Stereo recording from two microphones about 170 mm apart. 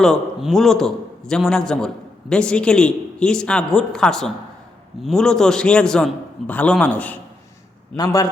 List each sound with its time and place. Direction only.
0.0 s a man's voice: centre (ahead or behind)
7.9 s a man's voice: 20° left (ahead or behind)